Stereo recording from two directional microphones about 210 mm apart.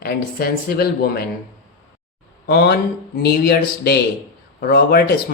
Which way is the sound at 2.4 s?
50° left (ahead or behind).